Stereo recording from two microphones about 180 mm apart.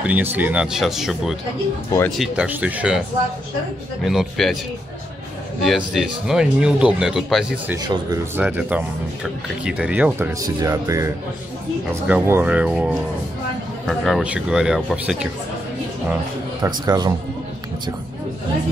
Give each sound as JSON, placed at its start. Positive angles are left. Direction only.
{"t": 0.0, "sound": "speech", "side_deg": -10}
{"t": 4.0, "sound": "speech", "side_deg": 0}
{"t": 5.6, "sound": "speech", "side_deg": 0}
{"t": 7.8, "sound": "speech", "side_deg": -20}
{"t": 8.4, "sound": "speech", "side_deg": -10}
{"t": 16.8, "sound": "speech", "side_deg": -20}